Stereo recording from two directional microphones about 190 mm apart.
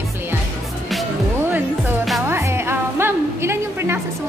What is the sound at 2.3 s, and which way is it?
A woman's voice, 15° right (ahead or behind).